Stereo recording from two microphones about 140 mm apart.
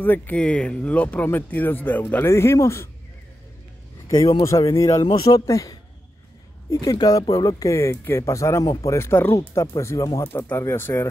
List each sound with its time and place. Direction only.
0.0 s speech: 10° left (ahead or behind)
4.4 s speech: 20° left (ahead or behind)